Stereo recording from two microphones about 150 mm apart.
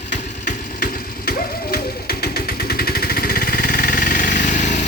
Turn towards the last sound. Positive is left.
turn(degrees=55)  # may be behind; listen again after turning